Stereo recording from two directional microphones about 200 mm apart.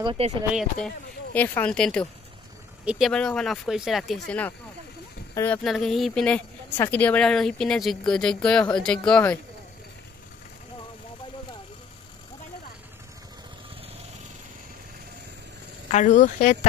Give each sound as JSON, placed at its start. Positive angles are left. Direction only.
{"t": 0.0, "sound": "speech", "side_deg": -25}
{"t": 0.5, "sound": "speech", "side_deg": 0}
{"t": 15.9, "sound": "speech", "side_deg": 40}